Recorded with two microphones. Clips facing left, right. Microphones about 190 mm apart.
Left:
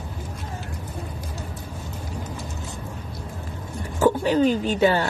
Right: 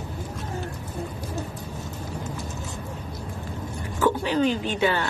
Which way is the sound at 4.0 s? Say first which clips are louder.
Left 3 dB; 45° left (ahead or behind).